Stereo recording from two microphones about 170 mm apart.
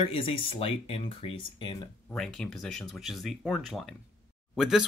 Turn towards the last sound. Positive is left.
turn(degrees=0)  # may be behind; listen again after turning